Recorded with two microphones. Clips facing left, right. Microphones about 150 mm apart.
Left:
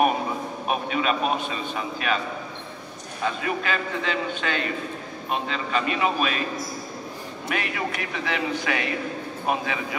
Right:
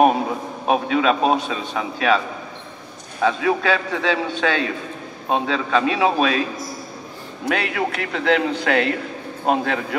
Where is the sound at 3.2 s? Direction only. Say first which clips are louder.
Right 8 dB; 90° right.